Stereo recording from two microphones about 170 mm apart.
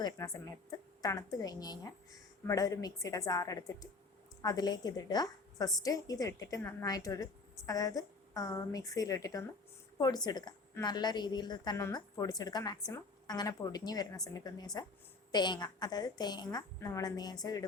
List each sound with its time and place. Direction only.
0.0 s a woman's voice: 25° left (ahead or behind)